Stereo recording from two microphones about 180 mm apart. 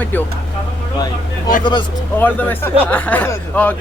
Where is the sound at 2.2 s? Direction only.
10° left (ahead or behind).